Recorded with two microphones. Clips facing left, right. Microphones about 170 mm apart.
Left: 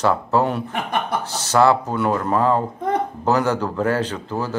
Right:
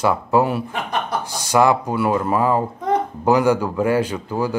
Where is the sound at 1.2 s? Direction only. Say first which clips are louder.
Even; 10° right (ahead or behind).